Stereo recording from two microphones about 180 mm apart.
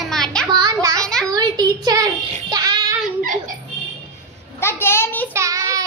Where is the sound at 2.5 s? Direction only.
20° right (ahead or behind).